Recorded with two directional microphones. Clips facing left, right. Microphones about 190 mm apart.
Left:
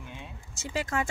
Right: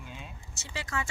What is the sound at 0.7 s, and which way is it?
Speech, 50° left (ahead or behind).